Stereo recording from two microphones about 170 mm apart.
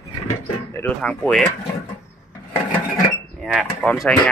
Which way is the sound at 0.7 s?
15° left (ahead or behind).